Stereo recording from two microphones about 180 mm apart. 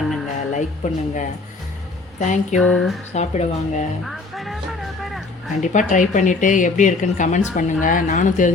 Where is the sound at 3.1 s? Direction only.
40° left (ahead or behind).